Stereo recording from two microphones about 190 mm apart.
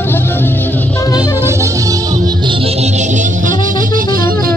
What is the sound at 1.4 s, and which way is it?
Music, 15° right (ahead or behind).